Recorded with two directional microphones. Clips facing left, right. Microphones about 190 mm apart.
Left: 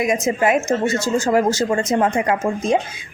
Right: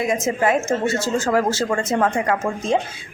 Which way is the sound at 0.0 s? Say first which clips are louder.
Left 2 dB; 15° left (ahead or behind).